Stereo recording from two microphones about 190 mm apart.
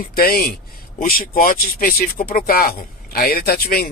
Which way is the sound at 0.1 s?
50° left (ahead or behind).